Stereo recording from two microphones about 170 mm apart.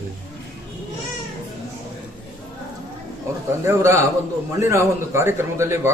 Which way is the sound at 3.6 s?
15° right (ahead or behind).